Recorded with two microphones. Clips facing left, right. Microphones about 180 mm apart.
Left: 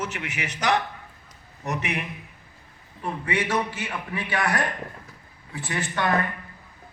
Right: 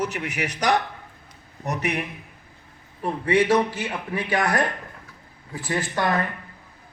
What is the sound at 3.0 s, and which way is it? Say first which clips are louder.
A man's voice: right 7 dB; 35° right (ahead or behind).